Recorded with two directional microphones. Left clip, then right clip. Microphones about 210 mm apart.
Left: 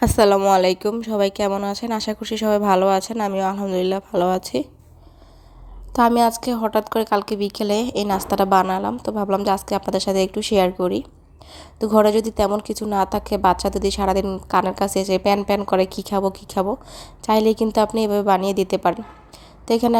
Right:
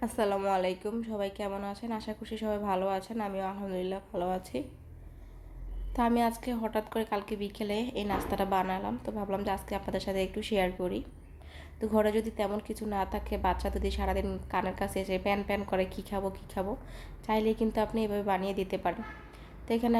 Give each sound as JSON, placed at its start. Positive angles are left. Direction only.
{"t": 0.0, "sound": "a woman's voice", "side_deg": 45}
{"t": 5.9, "sound": "a woman's voice", "side_deg": 40}